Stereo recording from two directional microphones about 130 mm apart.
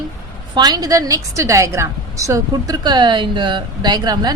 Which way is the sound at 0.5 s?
30° right (ahead or behind).